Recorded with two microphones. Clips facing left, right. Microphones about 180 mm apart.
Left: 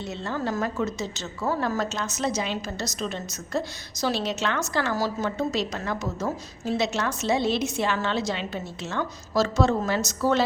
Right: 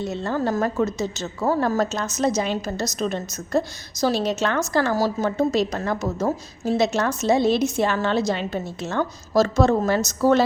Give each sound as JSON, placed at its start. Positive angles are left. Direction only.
{"t": 0.0, "sound": "a woman's voice", "side_deg": -45}